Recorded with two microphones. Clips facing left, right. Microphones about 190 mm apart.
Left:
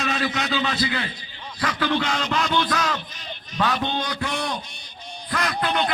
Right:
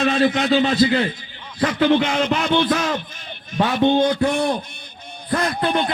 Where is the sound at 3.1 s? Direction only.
50° right (ahead or behind).